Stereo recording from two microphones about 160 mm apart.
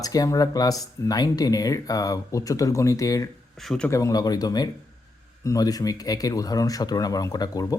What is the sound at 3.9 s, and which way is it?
Speech, 20° left (ahead or behind).